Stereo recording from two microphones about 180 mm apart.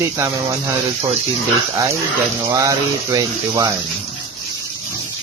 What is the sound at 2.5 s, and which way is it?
Speech, 20° right (ahead or behind).